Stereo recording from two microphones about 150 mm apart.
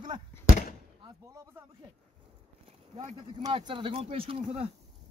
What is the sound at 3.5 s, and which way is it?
Speech, 35° right (ahead or behind).